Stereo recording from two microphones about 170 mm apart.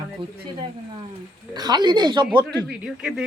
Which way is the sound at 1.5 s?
25° right (ahead or behind).